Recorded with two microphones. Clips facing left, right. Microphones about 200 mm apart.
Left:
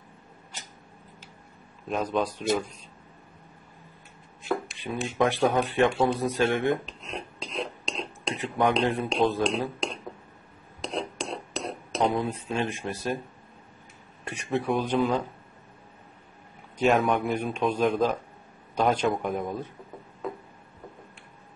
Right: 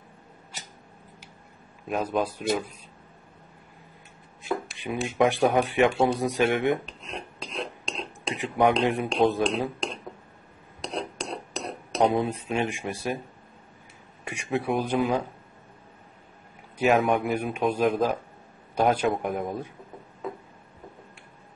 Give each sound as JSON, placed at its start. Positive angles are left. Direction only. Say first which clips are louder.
{"t": 1.9, "sound": "speech", "louder": "even", "side_deg": -5}
{"t": 4.5, "sound": "speech", "louder": "even", "side_deg": -10}
{"t": 6.9, "sound": "a sound", "louder": "left 1 dB", "side_deg": 0}
{"t": 8.4, "sound": "speech", "louder": "right 2 dB", "side_deg": -15}
{"t": 10.8, "sound": "cutlery", "louder": "left 1 dB", "side_deg": 0}
{"t": 12.0, "sound": "speech", "louder": "right 3 dB", "side_deg": -20}
{"t": 14.2, "sound": "speech", "louder": "even", "side_deg": -10}
{"t": 16.7, "sound": "a man's voice", "louder": "right 1 dB", "side_deg": 0}
{"t": 20.2, "sound": "music", "louder": "even", "side_deg": 0}